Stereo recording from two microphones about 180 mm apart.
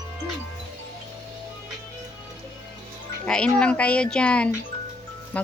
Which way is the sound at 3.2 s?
5° left (ahead or behind).